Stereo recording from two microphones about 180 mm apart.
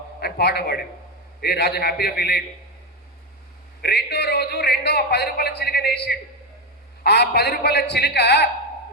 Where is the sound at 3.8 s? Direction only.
65° left (ahead or behind).